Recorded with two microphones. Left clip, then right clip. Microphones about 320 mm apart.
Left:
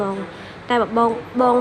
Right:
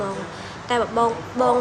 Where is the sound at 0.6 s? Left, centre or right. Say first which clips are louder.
Left 3 dB; left.